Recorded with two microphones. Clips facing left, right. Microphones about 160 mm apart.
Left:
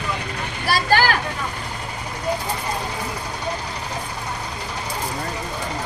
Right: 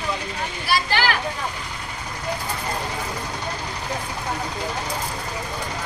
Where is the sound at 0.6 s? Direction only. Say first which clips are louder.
Left 4 dB; 45° left (ahead or behind).